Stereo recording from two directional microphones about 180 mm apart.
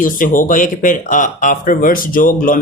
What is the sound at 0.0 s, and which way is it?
Speech, 50° left (ahead or behind).